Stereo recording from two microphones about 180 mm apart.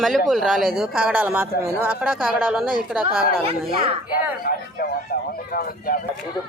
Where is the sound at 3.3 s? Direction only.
30° right (ahead or behind).